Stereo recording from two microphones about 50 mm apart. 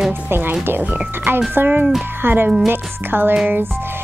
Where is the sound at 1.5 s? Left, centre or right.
Right.